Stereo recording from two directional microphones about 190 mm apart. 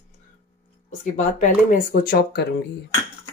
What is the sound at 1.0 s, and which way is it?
Speech, 40° left (ahead or behind).